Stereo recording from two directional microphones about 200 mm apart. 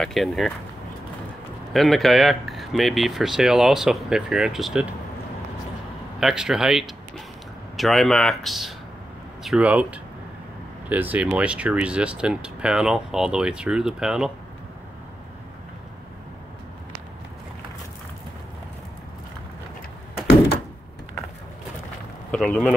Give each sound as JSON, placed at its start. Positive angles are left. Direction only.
{"t": 0.0, "sound": "speech", "side_deg": 0}
{"t": 1.7, "sound": "speech", "side_deg": 0}
{"t": 6.1, "sound": "speech", "side_deg": -5}
{"t": 20.2, "sound": "door", "side_deg": 55}
{"t": 22.3, "sound": "speech", "side_deg": 5}